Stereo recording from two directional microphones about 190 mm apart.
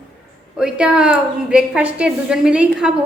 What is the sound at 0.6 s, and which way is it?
A woman's voice, 5° right (ahead or behind).